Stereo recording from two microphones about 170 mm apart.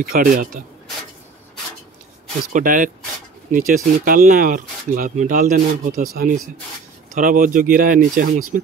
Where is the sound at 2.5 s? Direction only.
50° right (ahead or behind).